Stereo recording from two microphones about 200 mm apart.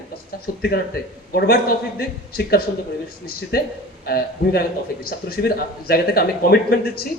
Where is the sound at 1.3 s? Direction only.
50° left (ahead or behind).